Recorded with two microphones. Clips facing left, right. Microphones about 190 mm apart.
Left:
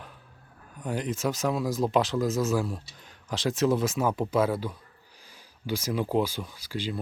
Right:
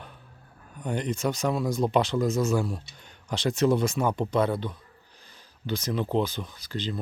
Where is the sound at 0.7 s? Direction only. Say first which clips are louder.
Right 1 dB; centre (ahead or behind).